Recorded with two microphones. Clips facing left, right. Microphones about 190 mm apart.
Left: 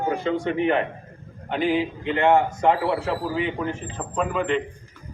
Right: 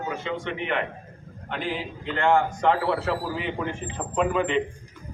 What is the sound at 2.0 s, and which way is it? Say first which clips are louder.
Speech: left 2 dB; 15° left (ahead or behind).